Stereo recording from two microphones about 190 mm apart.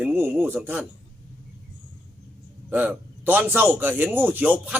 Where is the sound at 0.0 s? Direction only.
10° right (ahead or behind).